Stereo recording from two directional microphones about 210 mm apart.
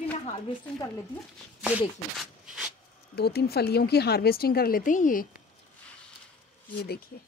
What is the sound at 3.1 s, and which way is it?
A woman's voice, 50° left (ahead or behind).